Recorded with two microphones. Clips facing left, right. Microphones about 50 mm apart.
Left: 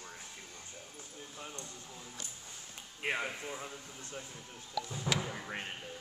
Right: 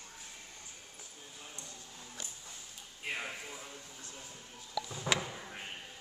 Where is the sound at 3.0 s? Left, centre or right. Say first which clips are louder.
Left 4 dB; left.